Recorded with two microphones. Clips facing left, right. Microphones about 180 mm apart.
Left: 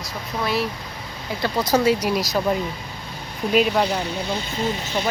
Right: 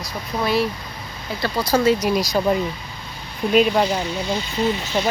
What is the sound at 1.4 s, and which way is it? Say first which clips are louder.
Speech: even; 15° left (ahead or behind).